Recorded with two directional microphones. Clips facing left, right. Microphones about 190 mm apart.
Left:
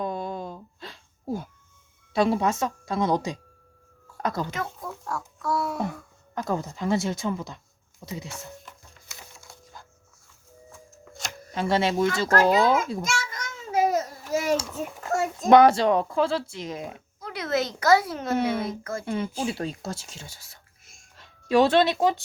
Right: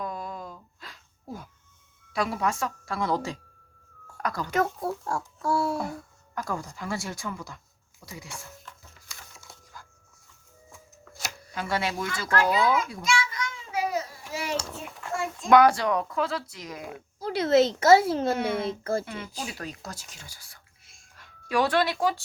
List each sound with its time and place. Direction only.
0.0 s a sound: 25° left (ahead or behind)
2.1 s speech: 25° left (ahead or behind)
4.5 s a child's voice: 40° right (ahead or behind)
6.3 s speech: 25° left (ahead or behind)
11.5 s speech: 25° left (ahead or behind)
12.3 s speech: 45° left (ahead or behind)
13.0 s babbling: 45° left (ahead or behind)
14.8 s speech: 45° left (ahead or behind)
15.1 s a sound: 40° left (ahead or behind)
15.4 s speech: 25° left (ahead or behind)
17.2 s a child's voice: 30° right (ahead or behind)
19.0 s speech: 30° left (ahead or behind)